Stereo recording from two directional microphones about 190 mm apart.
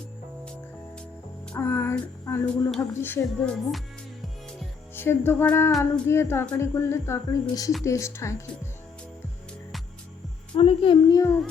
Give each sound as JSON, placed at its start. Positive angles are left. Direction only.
{"t": 1.5, "sound": "music", "side_deg": 15}
{"t": 2.6, "sound": "a woman's voice", "side_deg": 5}
{"t": 4.9, "sound": "a woman's voice", "side_deg": 10}
{"t": 10.6, "sound": "a child's voice", "side_deg": 30}